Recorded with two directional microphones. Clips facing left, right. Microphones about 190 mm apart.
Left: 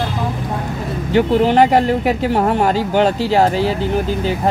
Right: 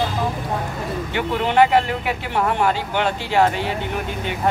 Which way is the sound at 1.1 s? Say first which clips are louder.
Left 6 dB; 40° left (ahead or behind).